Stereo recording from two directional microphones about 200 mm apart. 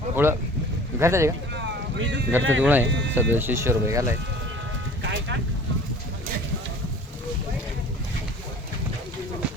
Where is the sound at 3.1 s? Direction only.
10° right (ahead or behind).